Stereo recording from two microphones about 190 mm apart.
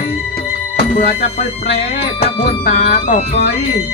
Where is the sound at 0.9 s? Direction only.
40° left (ahead or behind).